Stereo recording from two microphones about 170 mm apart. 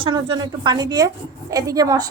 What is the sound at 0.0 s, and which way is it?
A woman's voice, 25° right (ahead or behind).